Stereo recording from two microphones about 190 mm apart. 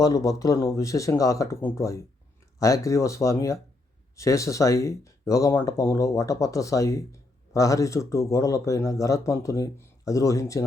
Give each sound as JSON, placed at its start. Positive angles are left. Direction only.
{"t": 0.0, "sound": "speech", "side_deg": 20}